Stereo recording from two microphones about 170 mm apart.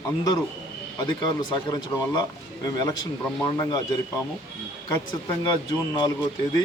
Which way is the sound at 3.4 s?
25° left (ahead or behind).